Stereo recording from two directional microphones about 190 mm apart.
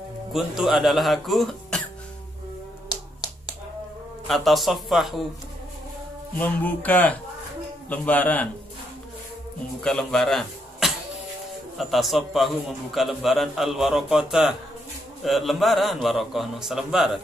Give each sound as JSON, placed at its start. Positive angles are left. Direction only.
{"t": 0.3, "sound": "a man's voice", "side_deg": 0}
{"t": 2.9, "sound": "a sound", "side_deg": 20}
{"t": 4.3, "sound": "a man's voice", "side_deg": 0}
{"t": 6.3, "sound": "speech", "side_deg": 10}
{"t": 9.8, "sound": "a man's voice", "side_deg": 5}